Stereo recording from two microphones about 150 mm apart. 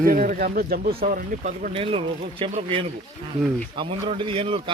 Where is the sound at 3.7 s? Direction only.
35° right (ahead or behind).